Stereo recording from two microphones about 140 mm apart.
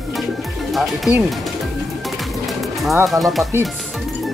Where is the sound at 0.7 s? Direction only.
Centre (ahead or behind).